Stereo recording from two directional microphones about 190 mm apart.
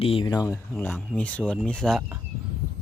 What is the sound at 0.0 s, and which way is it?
Speech, 30° left (ahead or behind).